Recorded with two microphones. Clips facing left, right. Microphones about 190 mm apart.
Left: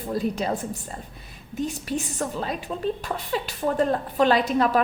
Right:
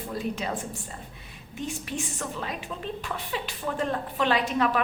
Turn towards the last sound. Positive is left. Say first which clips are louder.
# left 4 dB
turn(degrees=35)  # may be behind; listen again after turning